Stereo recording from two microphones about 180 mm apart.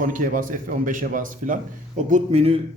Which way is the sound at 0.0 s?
50° right (ahead or behind).